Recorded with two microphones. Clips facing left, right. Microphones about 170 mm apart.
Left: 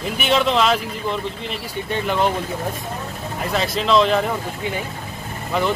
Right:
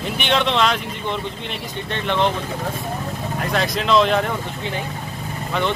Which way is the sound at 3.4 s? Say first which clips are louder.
Left 1 dB; 5° left (ahead or behind).